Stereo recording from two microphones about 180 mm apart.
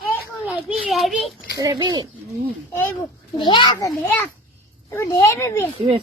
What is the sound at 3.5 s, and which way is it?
Speech, 25° left (ahead or behind).